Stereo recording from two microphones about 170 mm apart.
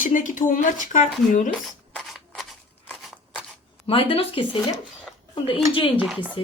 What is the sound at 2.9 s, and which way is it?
Scissors, centre (ahead or behind).